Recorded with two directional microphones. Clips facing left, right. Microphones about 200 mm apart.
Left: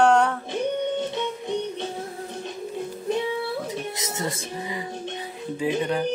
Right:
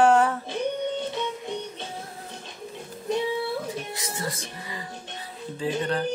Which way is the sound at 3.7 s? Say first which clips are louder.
Left 2 dB; 20° left (ahead or behind).